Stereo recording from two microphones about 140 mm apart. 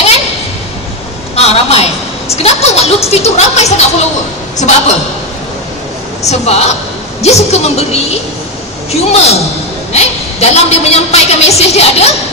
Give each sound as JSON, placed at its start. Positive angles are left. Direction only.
{"t": 1.3, "sound": "a sound", "side_deg": 45}
{"t": 4.6, "sound": "a woman's voice", "side_deg": 55}
{"t": 6.2, "sound": "a woman's voice", "side_deg": 50}